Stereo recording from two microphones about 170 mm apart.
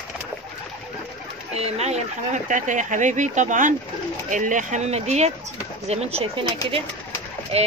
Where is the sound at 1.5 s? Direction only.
40° right (ahead or behind).